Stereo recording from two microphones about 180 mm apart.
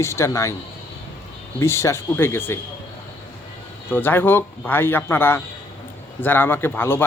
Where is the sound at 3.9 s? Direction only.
10° left (ahead or behind).